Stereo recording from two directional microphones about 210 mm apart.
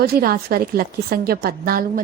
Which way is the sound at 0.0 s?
45° right (ahead or behind).